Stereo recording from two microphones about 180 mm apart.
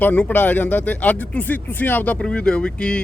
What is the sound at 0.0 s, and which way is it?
A man's voice, 10° left (ahead or behind).